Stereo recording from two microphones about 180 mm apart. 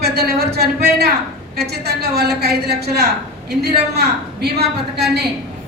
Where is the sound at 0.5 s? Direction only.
60° right (ahead or behind).